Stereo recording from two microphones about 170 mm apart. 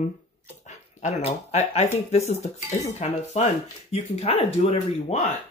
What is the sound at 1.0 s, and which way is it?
Speech, 40° left (ahead or behind).